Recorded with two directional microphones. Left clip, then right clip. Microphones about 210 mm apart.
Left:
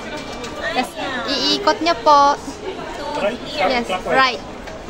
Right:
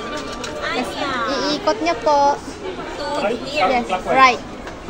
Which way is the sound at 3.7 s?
10° left (ahead or behind).